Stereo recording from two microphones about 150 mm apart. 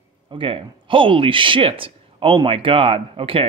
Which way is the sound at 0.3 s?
35° right (ahead or behind).